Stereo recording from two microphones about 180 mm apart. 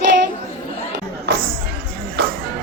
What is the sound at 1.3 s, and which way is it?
Music, 70° right (ahead or behind).